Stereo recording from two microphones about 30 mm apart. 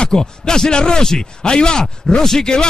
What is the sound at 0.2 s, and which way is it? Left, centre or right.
A man's voice, centre.